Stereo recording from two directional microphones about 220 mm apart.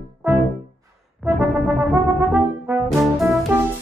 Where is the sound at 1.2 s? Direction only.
10° right (ahead or behind).